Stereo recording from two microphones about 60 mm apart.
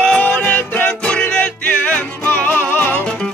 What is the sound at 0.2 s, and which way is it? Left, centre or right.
Music, left.